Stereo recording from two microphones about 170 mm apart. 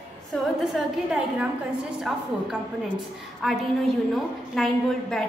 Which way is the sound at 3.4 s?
Centre (ahead or behind).